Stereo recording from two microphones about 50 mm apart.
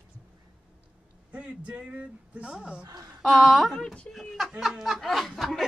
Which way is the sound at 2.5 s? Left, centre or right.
Centre.